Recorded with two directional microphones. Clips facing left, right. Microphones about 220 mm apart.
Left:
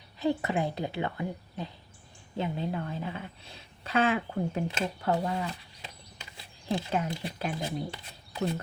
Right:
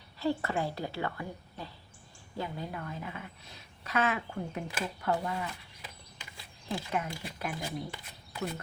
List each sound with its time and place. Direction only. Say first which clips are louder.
0.2 s a woman's voice: left 3 dB; 20° left (ahead or behind)